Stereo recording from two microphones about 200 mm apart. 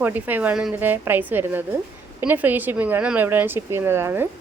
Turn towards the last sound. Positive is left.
turn(degrees=-10)  # may be behind; listen again after turning